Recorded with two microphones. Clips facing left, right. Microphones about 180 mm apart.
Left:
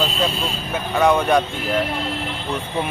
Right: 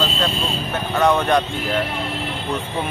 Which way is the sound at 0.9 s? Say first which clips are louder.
Left 1 dB; 10° left (ahead or behind).